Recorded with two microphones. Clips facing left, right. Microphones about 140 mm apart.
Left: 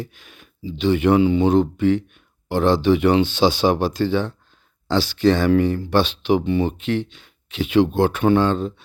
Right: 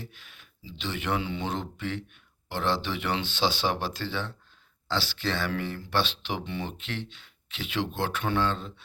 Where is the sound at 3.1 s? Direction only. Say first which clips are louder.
Left 12 dB; 15° left (ahead or behind).